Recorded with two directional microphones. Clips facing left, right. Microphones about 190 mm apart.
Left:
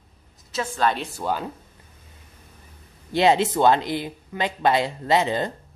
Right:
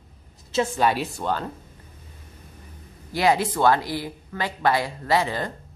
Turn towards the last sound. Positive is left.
turn(degrees=20)  # may be behind; listen again after turning